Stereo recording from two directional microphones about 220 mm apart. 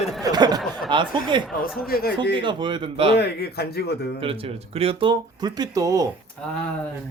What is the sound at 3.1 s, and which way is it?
A man's voice, 45° left (ahead or behind).